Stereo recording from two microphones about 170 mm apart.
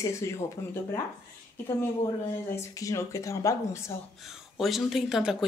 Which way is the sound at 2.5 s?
20° left (ahead or behind).